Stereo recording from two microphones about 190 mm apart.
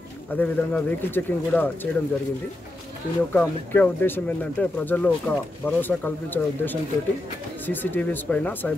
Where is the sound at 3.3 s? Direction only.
10° left (ahead or behind).